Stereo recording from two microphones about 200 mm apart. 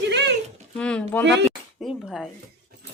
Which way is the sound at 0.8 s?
5° left (ahead or behind).